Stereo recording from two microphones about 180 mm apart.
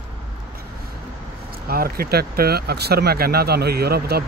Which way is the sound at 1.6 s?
55° right (ahead or behind).